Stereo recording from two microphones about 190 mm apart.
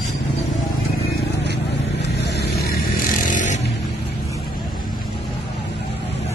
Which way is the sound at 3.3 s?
40° left (ahead or behind).